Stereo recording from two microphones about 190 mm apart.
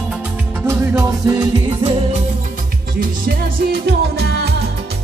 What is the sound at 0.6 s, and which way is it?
Music, 15° right (ahead or behind).